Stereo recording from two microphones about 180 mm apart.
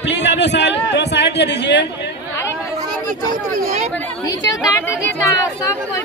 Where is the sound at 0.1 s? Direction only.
75° left (ahead or behind).